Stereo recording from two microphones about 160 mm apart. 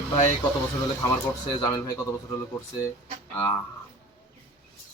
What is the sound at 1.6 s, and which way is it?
Speech, 20° left (ahead or behind).